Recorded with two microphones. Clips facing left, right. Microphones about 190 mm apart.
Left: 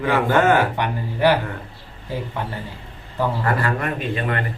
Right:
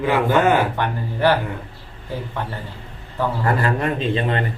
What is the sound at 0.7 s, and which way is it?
Speech, 15° left (ahead or behind).